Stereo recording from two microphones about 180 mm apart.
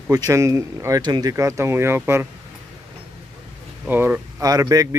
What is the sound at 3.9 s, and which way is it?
Speech, 10° right (ahead or behind).